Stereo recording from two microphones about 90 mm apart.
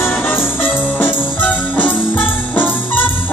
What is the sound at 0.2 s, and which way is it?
Music, 25° left (ahead or behind).